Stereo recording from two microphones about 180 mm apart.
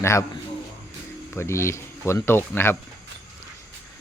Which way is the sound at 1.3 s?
15° left (ahead or behind).